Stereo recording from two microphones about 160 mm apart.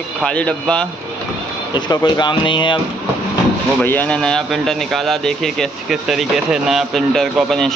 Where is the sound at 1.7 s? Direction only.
25° left (ahead or behind).